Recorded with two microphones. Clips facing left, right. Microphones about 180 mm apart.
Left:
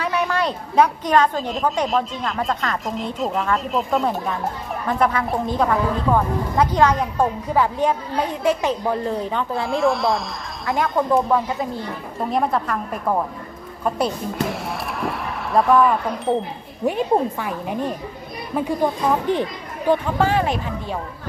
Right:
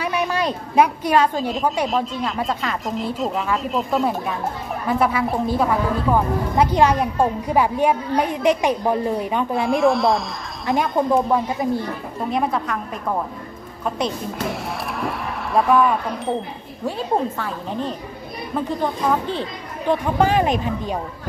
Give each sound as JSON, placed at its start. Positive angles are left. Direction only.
{"t": 0.0, "sound": "a woman's voice", "side_deg": -15}
{"t": 9.6, "sound": "speech", "side_deg": 0}
{"t": 10.7, "sound": "a woman's voice", "side_deg": -15}
{"t": 12.3, "sound": "speech", "side_deg": 0}
{"t": 13.9, "sound": "speech", "side_deg": 0}
{"t": 16.8, "sound": "a woman's voice", "side_deg": 15}
{"t": 20.2, "sound": "a woman's voice", "side_deg": -15}